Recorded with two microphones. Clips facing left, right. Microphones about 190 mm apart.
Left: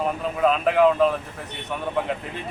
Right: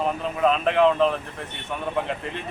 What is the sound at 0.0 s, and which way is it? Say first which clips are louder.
Speech: left 1 dB; 5° left (ahead or behind).